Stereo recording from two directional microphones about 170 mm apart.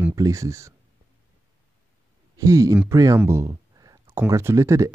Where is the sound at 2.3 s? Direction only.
20° right (ahead or behind).